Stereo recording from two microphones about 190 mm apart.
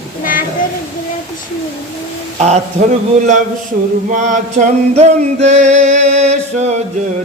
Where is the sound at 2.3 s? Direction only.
35° right (ahead or behind).